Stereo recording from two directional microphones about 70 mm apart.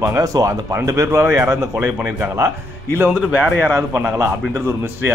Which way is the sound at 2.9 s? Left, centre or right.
Right.